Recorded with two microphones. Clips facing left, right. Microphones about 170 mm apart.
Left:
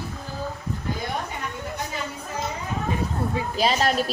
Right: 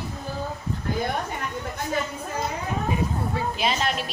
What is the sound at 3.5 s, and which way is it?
Speech, 35° left (ahead or behind).